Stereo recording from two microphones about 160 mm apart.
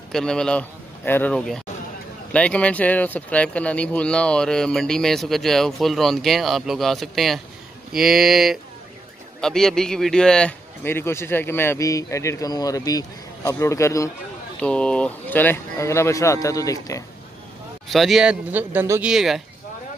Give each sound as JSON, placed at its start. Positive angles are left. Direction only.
{"t": 0.1, "sound": "a man's voice", "side_deg": 5}
{"t": 14.6, "sound": "a man's voice", "side_deg": 5}
{"t": 17.8, "sound": "speech", "side_deg": 0}